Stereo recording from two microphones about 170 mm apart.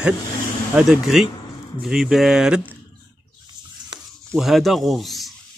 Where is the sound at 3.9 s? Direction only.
25° right (ahead or behind).